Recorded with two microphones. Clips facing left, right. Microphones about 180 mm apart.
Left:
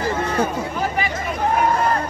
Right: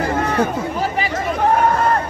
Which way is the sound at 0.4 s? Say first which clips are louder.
Right 2 dB; 30° right (ahead or behind).